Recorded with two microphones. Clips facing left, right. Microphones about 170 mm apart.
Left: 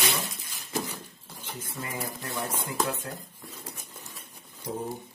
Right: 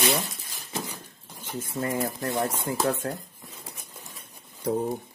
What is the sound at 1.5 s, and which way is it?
Speech, 50° right (ahead or behind).